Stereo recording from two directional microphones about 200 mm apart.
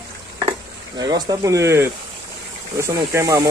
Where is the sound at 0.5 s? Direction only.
20° right (ahead or behind).